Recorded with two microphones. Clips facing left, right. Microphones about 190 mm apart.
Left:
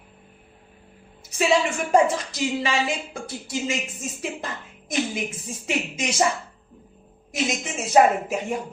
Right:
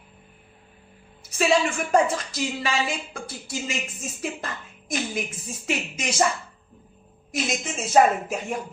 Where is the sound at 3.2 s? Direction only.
20° left (ahead or behind).